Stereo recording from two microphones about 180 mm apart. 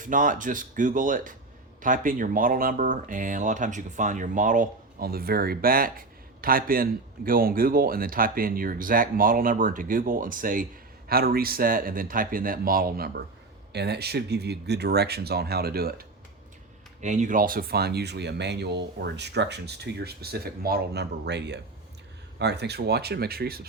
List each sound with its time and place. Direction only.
0.0 s speech: 45° right (ahead or behind)
13.7 s speech: 65° right (ahead or behind)
17.0 s speech: 40° right (ahead or behind); by 23.6 s 60° right (ahead or behind)